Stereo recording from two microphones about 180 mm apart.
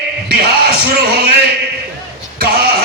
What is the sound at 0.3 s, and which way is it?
Speech, 60° right (ahead or behind).